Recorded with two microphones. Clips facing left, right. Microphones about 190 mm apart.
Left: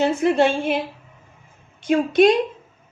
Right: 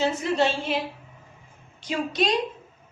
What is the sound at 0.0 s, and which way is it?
Speech, 55° left (ahead or behind).